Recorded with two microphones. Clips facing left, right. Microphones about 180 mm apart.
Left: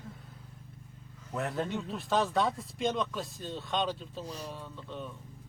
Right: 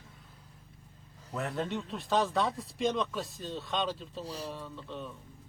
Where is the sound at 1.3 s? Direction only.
Centre (ahead or behind).